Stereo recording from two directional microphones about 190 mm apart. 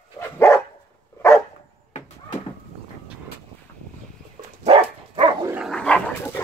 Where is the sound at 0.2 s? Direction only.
15° left (ahead or behind).